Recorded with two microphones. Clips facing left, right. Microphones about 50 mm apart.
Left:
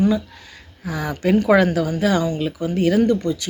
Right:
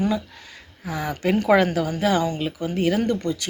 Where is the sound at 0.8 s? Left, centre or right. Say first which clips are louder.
Left 3 dB; right.